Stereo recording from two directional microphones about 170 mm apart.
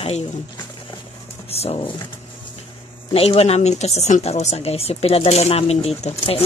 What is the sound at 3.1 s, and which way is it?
Speech, 35° left (ahead or behind).